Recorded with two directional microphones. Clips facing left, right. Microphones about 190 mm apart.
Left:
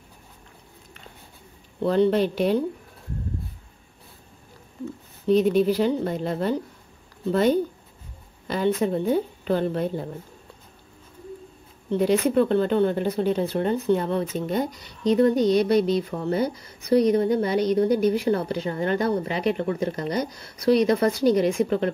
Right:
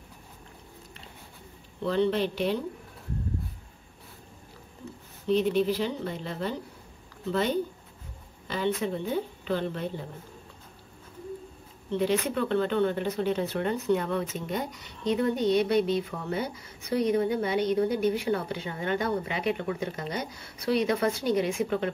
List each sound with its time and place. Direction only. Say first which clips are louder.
1.8 s speech: left 6 dB; 45° left (ahead or behind)
5.2 s speech: left 5 dB; 40° left (ahead or behind)
11.9 s speech: left 6 dB; 40° left (ahead or behind)